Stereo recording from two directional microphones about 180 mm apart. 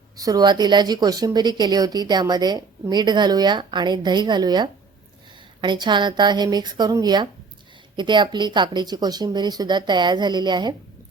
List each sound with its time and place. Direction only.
0.2 s a woman's voice: 20° right (ahead or behind)